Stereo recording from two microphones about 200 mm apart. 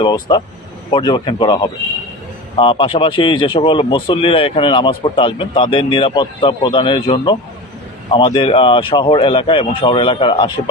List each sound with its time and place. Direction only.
0.0 s speech: 20° left (ahead or behind)